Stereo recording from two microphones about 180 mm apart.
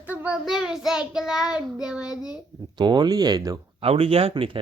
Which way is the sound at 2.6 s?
25° right (ahead or behind).